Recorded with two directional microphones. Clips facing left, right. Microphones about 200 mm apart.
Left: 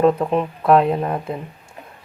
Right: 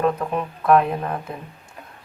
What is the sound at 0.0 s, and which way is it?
Speech, 25° left (ahead or behind).